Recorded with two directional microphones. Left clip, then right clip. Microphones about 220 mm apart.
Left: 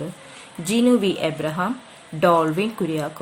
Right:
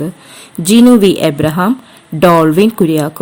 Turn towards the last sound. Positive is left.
turn(degrees=-45)  # may be behind; listen again after turning